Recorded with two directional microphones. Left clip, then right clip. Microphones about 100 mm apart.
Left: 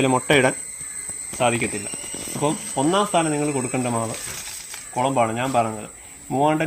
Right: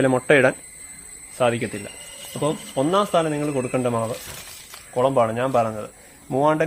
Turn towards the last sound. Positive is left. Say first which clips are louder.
# right 1 dB
turn(degrees=-30)  # may be behind; listen again after turning